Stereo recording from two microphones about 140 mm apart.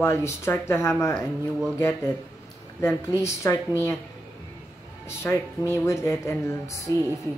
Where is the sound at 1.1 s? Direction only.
5° right (ahead or behind).